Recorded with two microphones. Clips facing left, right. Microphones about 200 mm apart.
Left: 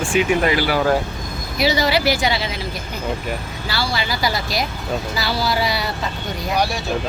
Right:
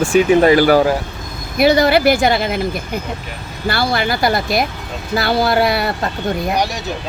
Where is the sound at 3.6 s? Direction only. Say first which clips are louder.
Right 7 dB; 55° right (ahead or behind).